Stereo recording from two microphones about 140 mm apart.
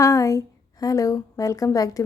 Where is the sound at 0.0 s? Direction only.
20° left (ahead or behind).